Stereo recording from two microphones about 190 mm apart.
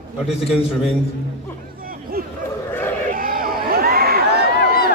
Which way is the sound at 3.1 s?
50° right (ahead or behind).